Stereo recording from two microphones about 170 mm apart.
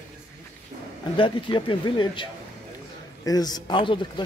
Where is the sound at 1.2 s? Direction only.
30° left (ahead or behind).